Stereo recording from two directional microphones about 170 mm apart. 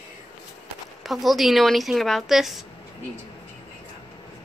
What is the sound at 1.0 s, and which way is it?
Speech, centre (ahead or behind).